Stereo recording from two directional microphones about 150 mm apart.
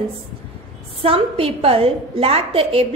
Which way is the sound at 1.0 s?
40° right (ahead or behind).